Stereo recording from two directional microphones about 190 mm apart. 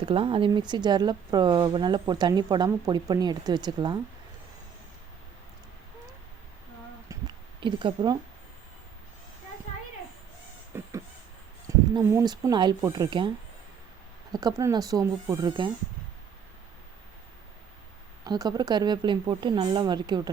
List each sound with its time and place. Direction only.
0.0 s speech: 25° right (ahead or behind)
7.1 s a sound: 25° right (ahead or behind)
10.7 s a sound: 15° right (ahead or behind)
11.7 s speech: 15° right (ahead or behind)
14.3 s speech: 20° right (ahead or behind)
18.3 s speech: 20° right (ahead or behind)